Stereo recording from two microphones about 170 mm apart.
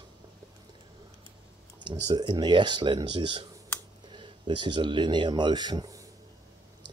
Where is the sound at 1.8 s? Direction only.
25° right (ahead or behind).